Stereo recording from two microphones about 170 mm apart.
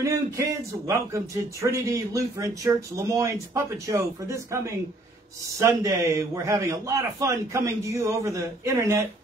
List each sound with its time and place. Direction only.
0.0 s speech: 20° right (ahead or behind)